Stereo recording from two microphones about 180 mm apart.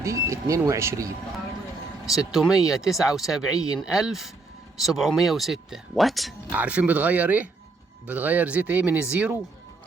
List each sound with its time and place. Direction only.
0.0 s speech: 15° right (ahead or behind)
2.0 s speech: centre (ahead or behind)